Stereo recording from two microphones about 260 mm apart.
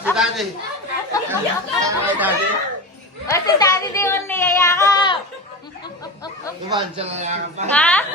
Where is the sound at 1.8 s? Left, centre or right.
Centre.